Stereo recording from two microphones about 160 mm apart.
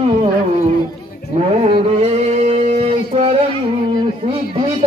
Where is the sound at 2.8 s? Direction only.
40° right (ahead or behind).